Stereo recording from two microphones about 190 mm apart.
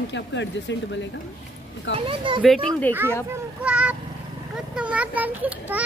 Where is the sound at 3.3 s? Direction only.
5° right (ahead or behind).